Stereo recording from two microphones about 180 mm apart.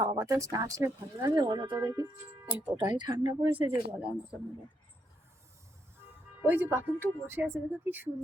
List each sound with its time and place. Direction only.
0.0 s speech: 20° right (ahead or behind)
2.5 s speech: 10° right (ahead or behind)
2.9 s speech: 25° right (ahead or behind)
3.7 s speech: 5° right (ahead or behind)
6.4 s speech: 10° right (ahead or behind)